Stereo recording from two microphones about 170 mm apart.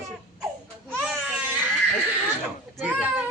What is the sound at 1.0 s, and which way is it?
Baby cry, 10° right (ahead or behind).